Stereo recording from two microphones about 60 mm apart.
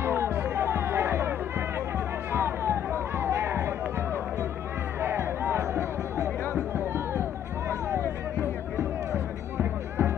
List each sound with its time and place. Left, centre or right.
0.0 s music: right
2.3 s a sound: right
5.0 s music: right
8.4 s music: right